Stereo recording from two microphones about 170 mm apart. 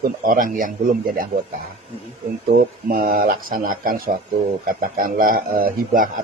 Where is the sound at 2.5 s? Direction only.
60° right (ahead or behind).